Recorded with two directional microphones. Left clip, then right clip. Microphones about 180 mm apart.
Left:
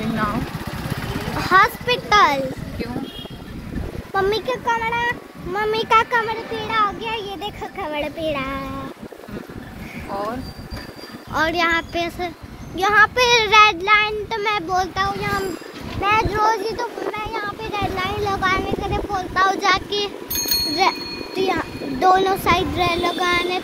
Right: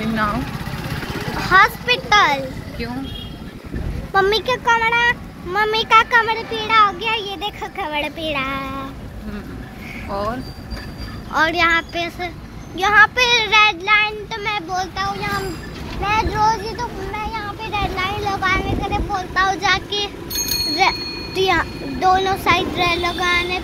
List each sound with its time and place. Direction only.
1.4 s a child's voice: 20° left (ahead or behind)
4.1 s a child's voice: 10° left (ahead or behind); by 6.2 s 30° left (ahead or behind)
6.2 s a child's voice: 15° left (ahead or behind)
11.3 s speech: 20° left (ahead or behind)
12.7 s child singing: 25° left (ahead or behind)
16.0 s a child's voice: 55° left (ahead or behind); by 21.0 s 25° left (ahead or behind)
21.4 s a child's voice: centre (ahead or behind)
22.0 s a child's voice: 30° left (ahead or behind)